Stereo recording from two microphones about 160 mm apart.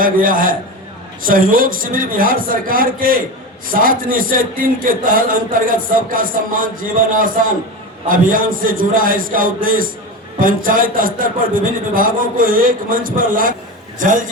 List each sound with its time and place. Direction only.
0.0 s a man's voice: 60° right (ahead or behind)